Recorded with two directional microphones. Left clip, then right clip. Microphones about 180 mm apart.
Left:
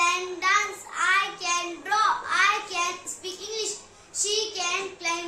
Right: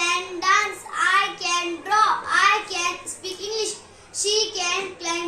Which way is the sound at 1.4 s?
25° left (ahead or behind).